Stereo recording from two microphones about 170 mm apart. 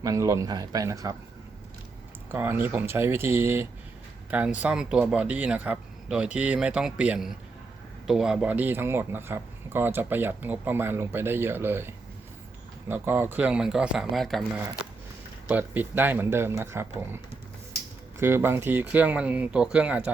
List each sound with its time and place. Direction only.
0.0 s speech: 20° right (ahead or behind)
2.3 s speech: 10° right (ahead or behind)
15.4 s speech: 10° right (ahead or behind)
18.2 s speech: 15° right (ahead or behind)